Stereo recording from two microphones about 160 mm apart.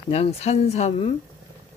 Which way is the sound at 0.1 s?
40° left (ahead or behind).